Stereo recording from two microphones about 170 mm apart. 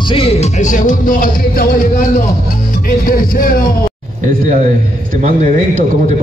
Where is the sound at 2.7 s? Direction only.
55° left (ahead or behind).